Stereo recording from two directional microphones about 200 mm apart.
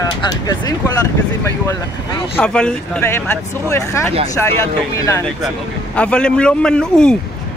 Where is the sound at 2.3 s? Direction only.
5° left (ahead or behind).